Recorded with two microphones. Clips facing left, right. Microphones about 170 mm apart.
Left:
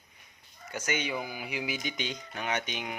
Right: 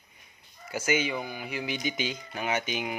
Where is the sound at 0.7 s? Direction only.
5° right (ahead or behind).